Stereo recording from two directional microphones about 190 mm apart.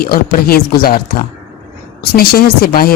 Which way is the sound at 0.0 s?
50° left (ahead or behind).